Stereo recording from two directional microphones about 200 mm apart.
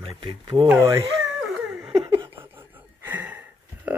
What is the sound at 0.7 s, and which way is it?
Speech, 10° right (ahead or behind).